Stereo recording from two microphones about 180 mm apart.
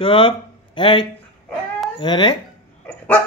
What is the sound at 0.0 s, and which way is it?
Speech, 30° left (ahead or behind).